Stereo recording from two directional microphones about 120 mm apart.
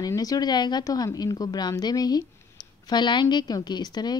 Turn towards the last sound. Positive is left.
turn(degrees=35)  # may be behind; listen again after turning